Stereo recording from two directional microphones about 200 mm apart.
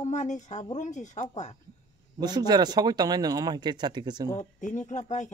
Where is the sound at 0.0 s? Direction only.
35° left (ahead or behind).